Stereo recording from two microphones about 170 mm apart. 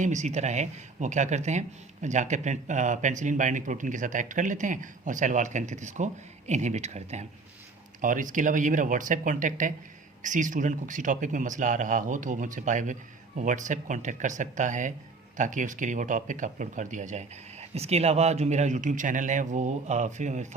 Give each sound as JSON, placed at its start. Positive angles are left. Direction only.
{"t": 0.0, "sound": "speech", "side_deg": -45}